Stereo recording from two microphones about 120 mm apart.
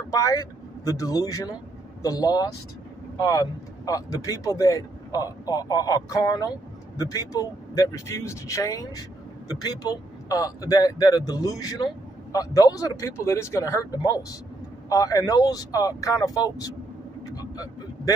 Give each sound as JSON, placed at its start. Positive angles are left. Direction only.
{"t": 0.1, "sound": "speech", "side_deg": 30}
{"t": 17.3, "sound": "vehicle", "side_deg": 30}